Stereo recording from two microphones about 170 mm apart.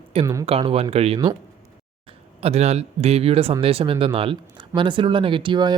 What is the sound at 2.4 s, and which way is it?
Speech, 40° right (ahead or behind).